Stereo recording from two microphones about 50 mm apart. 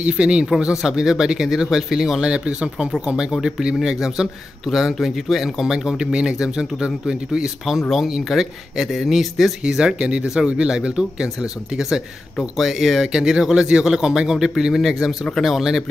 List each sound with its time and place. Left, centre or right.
0.0 s a man's voice: right; by 5.7 s centre
5.9 s a man's voice: centre
9.6 s a man's voice: centre